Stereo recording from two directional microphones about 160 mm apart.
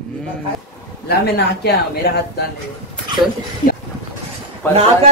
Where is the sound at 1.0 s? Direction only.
85° left.